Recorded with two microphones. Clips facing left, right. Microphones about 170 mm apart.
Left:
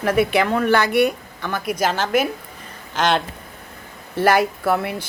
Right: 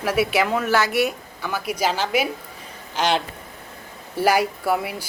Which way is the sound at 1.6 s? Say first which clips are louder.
Left 2 dB; 50° left (ahead or behind).